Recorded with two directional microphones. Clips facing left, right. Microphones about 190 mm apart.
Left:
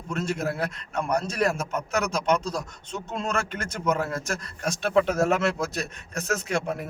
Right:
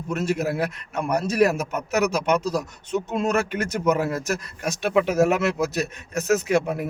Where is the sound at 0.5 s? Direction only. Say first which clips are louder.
Right 3 dB; 10° right (ahead or behind).